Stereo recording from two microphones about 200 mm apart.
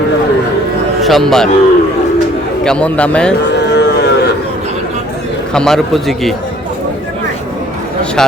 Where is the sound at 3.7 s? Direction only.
55° left (ahead or behind).